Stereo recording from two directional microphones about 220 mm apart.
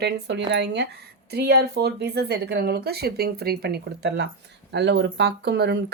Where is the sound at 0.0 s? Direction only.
50° right (ahead or behind).